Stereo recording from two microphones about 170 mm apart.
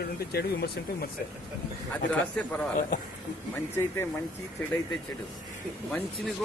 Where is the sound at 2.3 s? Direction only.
5° left (ahead or behind).